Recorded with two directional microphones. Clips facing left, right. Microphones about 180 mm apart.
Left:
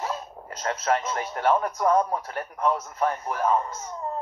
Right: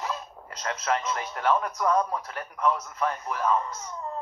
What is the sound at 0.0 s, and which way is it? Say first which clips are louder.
Speech: left 2 dB; 35° left (ahead or behind).